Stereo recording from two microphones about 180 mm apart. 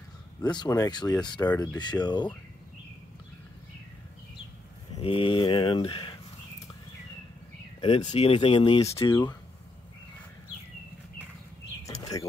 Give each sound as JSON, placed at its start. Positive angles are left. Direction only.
{"t": 0.4, "sound": "speech", "side_deg": 25}
{"t": 5.0, "sound": "speech", "side_deg": 30}
{"t": 7.8, "sound": "speech", "side_deg": 30}
{"t": 11.8, "sound": "bird", "side_deg": 20}